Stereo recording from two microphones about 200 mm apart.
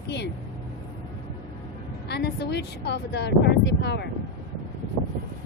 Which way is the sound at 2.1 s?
55° left (ahead or behind).